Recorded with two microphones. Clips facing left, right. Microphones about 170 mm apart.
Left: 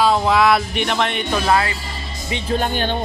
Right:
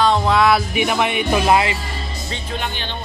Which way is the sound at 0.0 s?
5° left (ahead or behind).